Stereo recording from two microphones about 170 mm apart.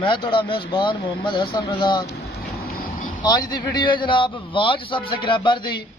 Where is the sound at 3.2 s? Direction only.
25° left (ahead or behind).